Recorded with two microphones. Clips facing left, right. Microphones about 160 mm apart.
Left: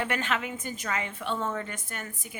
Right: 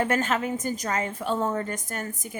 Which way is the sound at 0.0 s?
40° right (ahead or behind).